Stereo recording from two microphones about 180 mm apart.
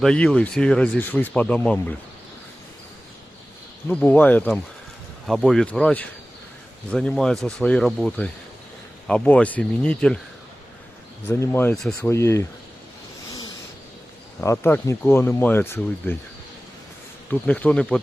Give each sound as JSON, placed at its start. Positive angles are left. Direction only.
{"t": 0.0, "sound": "speech", "side_deg": 5}
{"t": 3.8, "sound": "speech", "side_deg": 10}
{"t": 11.3, "sound": "speech", "side_deg": 15}
{"t": 12.0, "sound": "speech", "side_deg": 15}
{"t": 14.4, "sound": "speech", "side_deg": 15}
{"t": 17.3, "sound": "speech", "side_deg": 10}